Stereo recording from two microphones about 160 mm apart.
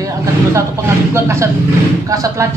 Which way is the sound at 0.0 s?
20° right (ahead or behind).